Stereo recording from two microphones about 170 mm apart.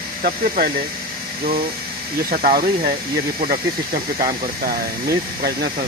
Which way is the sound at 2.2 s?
55° right (ahead or behind).